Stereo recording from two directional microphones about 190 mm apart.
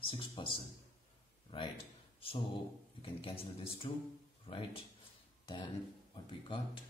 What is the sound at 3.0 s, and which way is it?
A man's voice, 30° left (ahead or behind).